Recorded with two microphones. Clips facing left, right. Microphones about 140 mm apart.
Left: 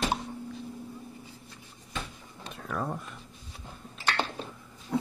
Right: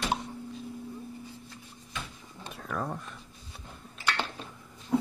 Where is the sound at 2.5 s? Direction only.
Centre (ahead or behind).